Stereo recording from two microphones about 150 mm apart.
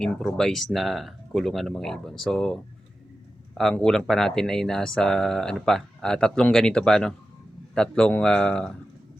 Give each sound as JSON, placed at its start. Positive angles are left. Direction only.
{"t": 0.0, "sound": "speech", "side_deg": 5}
{"t": 3.6, "sound": "speech", "side_deg": 5}